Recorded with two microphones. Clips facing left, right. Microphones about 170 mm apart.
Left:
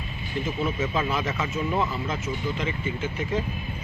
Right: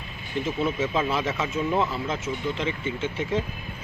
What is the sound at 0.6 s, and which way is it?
Speech, centre (ahead or behind).